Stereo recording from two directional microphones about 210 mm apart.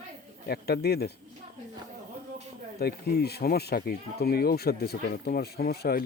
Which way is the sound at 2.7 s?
50° left (ahead or behind).